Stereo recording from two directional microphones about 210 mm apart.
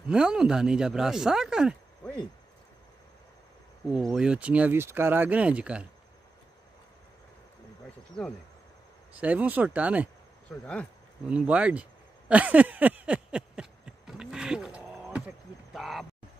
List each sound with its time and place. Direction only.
0.1 s speech: 5° right (ahead or behind)
3.9 s speech: centre (ahead or behind)
9.1 s speech: 5° right (ahead or behind)
10.6 s speech: 5° left (ahead or behind)
11.2 s a sound: 5° right (ahead or behind)